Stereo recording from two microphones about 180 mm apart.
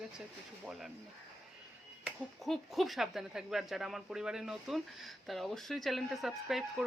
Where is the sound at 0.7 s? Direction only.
Centre (ahead or behind).